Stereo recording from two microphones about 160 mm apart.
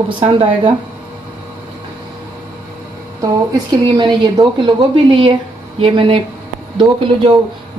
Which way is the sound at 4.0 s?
30° right (ahead or behind).